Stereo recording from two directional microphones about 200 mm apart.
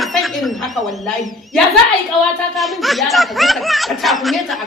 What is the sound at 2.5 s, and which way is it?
Speech, centre (ahead or behind).